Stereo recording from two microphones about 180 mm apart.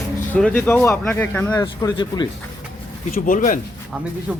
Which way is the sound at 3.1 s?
50° left (ahead or behind).